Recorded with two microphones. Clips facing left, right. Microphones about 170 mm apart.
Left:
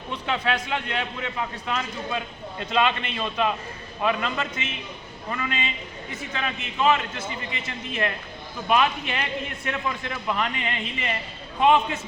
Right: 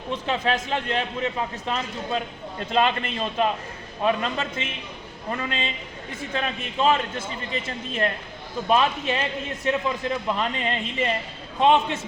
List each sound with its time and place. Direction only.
0.3 s a man's voice: 40° right (ahead or behind)
8.7 s a man's voice: 30° right (ahead or behind)
9.5 s a man's voice: 20° right (ahead or behind)